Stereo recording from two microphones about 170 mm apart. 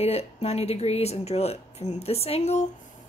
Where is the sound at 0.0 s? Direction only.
35° left (ahead or behind).